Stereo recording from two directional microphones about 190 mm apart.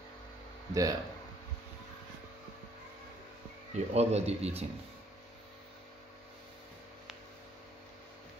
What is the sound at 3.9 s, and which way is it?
Speech, 35° right (ahead or behind).